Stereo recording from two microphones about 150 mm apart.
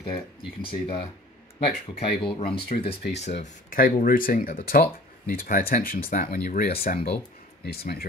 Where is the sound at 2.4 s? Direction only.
90° left.